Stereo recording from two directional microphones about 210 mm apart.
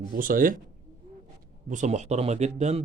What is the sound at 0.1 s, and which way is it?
Speech, 40° right (ahead or behind).